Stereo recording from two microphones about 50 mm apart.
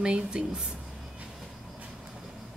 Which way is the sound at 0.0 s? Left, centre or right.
Centre.